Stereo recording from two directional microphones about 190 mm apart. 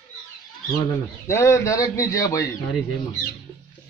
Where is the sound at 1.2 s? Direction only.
15° left (ahead or behind).